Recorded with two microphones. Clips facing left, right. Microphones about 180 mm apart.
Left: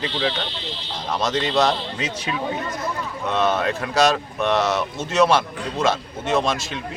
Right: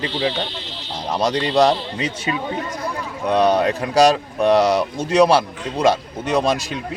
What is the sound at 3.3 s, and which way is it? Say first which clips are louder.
Speech: right 5 dB; 35° right (ahead or behind).